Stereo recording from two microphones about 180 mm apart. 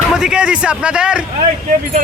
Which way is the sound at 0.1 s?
5° right (ahead or behind).